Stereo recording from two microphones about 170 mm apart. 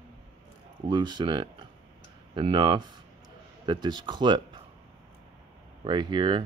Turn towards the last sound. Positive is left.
turn(degrees=-25)  # may be behind; listen again after turning